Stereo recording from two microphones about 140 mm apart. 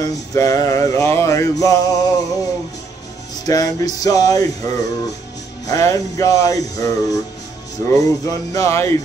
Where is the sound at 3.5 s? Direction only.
25° left (ahead or behind).